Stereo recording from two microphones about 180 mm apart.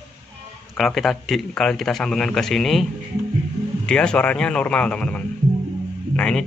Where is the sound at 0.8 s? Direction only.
Centre (ahead or behind).